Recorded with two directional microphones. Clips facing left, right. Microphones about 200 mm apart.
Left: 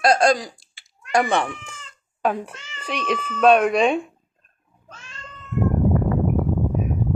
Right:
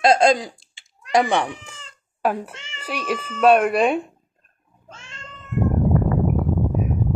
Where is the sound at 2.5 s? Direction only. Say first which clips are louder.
Right 1 dB; 25° right (ahead or behind).